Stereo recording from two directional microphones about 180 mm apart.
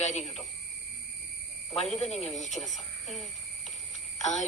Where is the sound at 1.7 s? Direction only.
Centre (ahead or behind).